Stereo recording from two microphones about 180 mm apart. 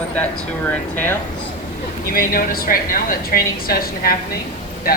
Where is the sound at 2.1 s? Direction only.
55° left (ahead or behind).